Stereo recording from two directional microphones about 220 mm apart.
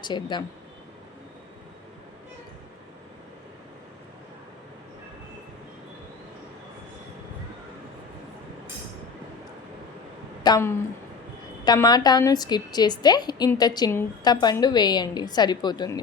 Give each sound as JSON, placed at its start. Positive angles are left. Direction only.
{"t": 0.0, "sound": "a woman's voice", "side_deg": 20}
{"t": 10.4, "sound": "a woman's voice", "side_deg": 15}